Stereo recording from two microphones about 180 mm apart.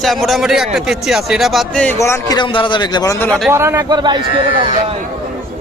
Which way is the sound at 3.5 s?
15° right (ahead or behind).